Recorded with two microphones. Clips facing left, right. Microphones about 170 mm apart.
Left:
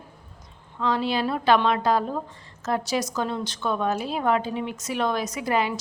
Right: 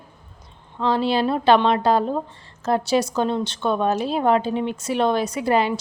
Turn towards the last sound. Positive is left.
turn(degrees=-30)  # may be behind; listen again after turning